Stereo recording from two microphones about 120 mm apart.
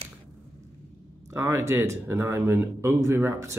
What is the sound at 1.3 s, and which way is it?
Speech, 25° right (ahead or behind).